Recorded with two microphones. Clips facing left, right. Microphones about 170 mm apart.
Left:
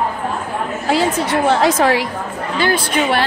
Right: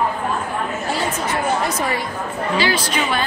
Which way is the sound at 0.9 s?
85° left.